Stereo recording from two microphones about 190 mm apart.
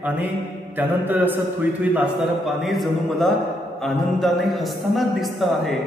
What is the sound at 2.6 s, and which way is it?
Speech, centre (ahead or behind).